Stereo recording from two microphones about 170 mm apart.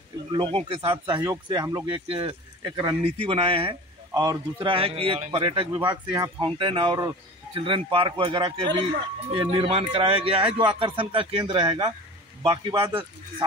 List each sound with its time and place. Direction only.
0.3 s speech: 30° right (ahead or behind)
1.9 s speech: 30° right (ahead or behind)
3.0 s speech: 35° right (ahead or behind)
4.1 s speech: 25° right (ahead or behind)
12.7 s speech: 15° right (ahead or behind)